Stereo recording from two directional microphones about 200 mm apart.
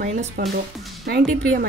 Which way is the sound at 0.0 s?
35° right (ahead or behind).